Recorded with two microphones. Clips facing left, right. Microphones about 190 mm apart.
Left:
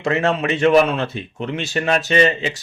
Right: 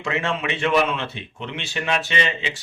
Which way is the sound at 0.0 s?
40° left (ahead or behind).